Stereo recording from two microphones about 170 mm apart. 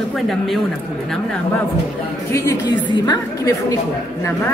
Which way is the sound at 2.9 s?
25° left (ahead or behind).